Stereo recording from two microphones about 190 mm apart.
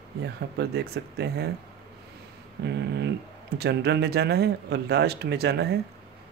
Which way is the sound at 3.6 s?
60° right (ahead or behind).